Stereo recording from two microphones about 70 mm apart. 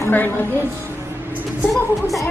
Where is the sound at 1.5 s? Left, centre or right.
Centre.